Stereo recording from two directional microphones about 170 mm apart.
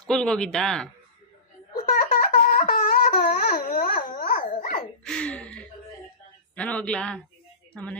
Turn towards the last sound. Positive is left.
turn(degrees=5)  # may be behind; listen again after turning